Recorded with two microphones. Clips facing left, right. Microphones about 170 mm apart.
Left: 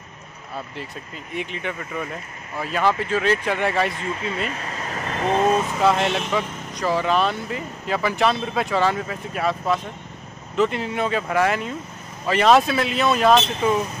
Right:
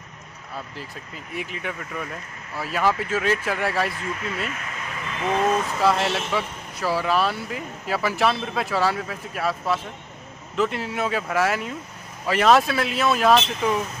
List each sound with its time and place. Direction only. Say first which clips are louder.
1.3 s speech: left 2 dB; 5° right (ahead or behind)
4.5 s vehicle: left 4 dB; 35° left (ahead or behind)
5.8 s speech: left 2 dB; 5° right (ahead or behind)